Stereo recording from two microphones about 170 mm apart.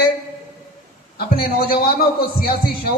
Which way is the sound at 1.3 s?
60° left (ahead or behind).